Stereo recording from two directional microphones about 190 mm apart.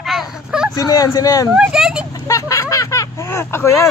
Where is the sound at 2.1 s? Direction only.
20° left (ahead or behind).